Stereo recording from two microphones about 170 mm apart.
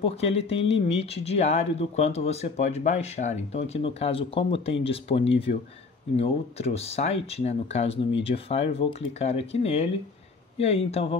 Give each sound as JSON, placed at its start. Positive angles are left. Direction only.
{"t": 0.0, "sound": "speech", "side_deg": 35}